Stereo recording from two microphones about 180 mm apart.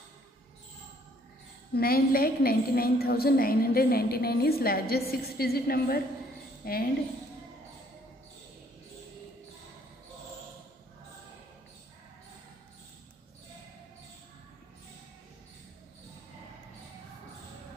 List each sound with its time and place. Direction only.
1.7 s a woman's voice: 55° left (ahead or behind)